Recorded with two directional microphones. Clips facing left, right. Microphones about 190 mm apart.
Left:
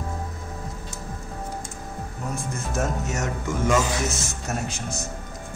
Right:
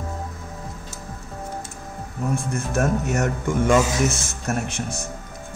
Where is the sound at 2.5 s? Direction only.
60° right (ahead or behind).